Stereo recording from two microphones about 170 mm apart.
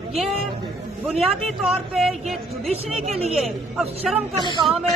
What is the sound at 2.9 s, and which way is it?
Speech, 35° right (ahead or behind).